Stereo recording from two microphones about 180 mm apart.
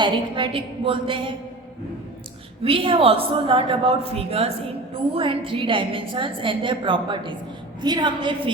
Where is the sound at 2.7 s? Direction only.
30° right (ahead or behind).